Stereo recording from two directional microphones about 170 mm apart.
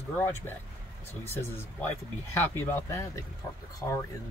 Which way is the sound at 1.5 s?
15° left (ahead or behind).